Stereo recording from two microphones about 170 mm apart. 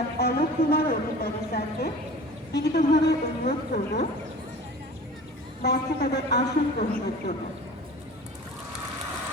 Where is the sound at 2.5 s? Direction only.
70° left (ahead or behind).